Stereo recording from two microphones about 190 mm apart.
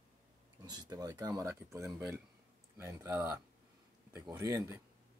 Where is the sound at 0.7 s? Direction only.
20° right (ahead or behind).